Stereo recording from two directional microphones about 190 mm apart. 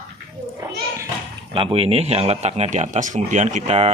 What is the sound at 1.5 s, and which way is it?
Speech, 30° right (ahead or behind).